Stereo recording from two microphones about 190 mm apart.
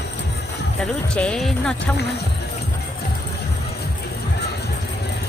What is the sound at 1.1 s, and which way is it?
Speech, 5° left (ahead or behind).